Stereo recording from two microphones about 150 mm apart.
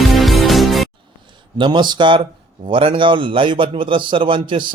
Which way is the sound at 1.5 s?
30° right (ahead or behind).